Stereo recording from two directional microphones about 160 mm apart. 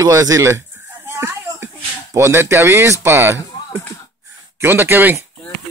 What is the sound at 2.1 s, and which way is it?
Speech, 15° right (ahead or behind).